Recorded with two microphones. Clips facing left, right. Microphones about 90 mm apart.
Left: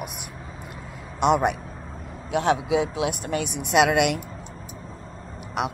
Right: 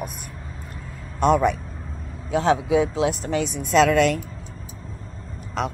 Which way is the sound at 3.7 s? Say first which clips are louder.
Right 2 dB; 15° left (ahead or behind).